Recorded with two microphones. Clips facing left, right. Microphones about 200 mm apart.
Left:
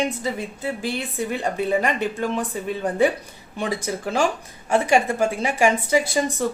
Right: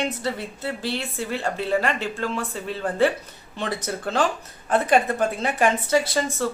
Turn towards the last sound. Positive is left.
turn(degrees=15)  # may be behind; listen again after turning